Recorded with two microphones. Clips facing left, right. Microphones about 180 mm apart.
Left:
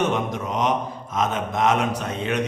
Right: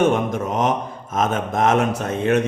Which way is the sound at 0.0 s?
50° right (ahead or behind).